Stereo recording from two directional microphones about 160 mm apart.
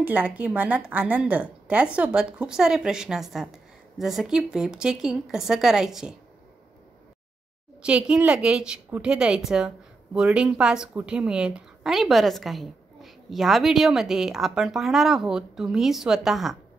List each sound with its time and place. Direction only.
0.0 s a woman's voice: 10° right (ahead or behind)
7.8 s a woman's voice: 5° right (ahead or behind)